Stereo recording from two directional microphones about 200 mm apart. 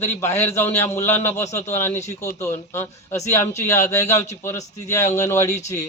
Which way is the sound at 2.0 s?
35° left (ahead or behind).